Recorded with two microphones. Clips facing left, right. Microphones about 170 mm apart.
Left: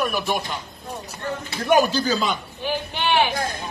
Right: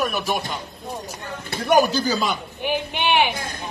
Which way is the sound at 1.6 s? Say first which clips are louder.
Right 1 dB; 5° right (ahead or behind).